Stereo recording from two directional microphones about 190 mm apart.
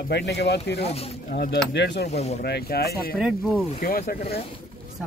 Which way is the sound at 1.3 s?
60° left (ahead or behind).